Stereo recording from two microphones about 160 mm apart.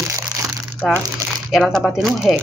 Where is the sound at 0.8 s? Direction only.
Centre (ahead or behind).